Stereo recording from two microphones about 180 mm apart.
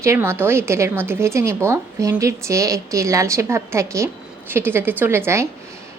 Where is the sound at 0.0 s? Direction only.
15° right (ahead or behind).